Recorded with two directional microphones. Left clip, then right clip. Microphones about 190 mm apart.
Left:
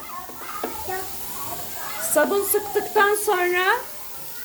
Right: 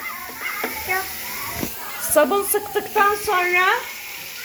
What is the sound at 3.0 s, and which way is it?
Speech, 25° left (ahead or behind).